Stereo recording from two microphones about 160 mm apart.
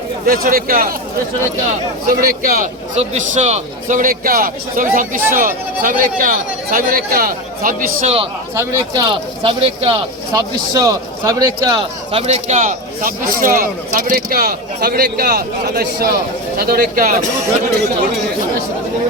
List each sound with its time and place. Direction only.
0.3 s a man's voice: 65° right (ahead or behind)
2.0 s a man's voice: 65° right (ahead or behind)
2.9 s a man's voice: 45° right (ahead or behind); by 7.9 s 60° right (ahead or behind)
8.0 s speech: 35° right (ahead or behind)
8.5 s speech: 25° right (ahead or behind)
10.3 s a man's voice: 20° right (ahead or behind)
12.1 s a man's voice: 40° right (ahead or behind); by 17.2 s 60° right (ahead or behind)